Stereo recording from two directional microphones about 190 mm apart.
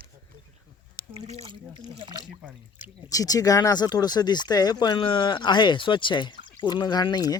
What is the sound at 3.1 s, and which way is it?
Speech, 20° left (ahead or behind).